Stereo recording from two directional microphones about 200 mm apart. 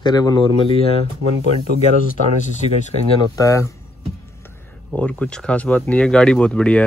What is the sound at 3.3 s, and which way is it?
Speech, 15° left (ahead or behind).